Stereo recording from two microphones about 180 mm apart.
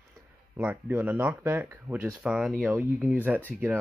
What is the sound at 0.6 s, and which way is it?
Speech, 10° right (ahead or behind).